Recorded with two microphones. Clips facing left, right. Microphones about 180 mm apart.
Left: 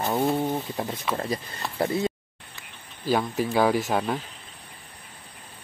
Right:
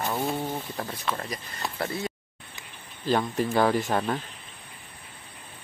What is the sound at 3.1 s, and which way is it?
A man's voice, 5° left (ahead or behind).